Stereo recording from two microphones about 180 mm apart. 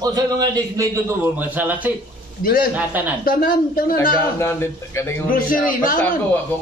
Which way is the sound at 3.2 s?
55° left (ahead or behind).